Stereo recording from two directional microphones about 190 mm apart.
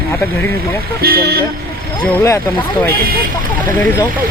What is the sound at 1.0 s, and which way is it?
Speech, 55° right (ahead or behind).